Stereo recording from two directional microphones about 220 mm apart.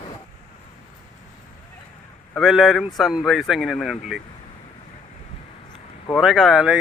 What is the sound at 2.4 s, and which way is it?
Speech, centre (ahead or behind).